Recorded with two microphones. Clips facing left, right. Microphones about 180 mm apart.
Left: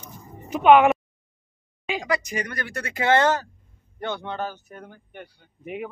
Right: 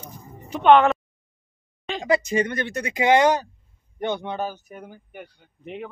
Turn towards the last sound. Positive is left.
turn(degrees=10)  # may be behind; listen again after turning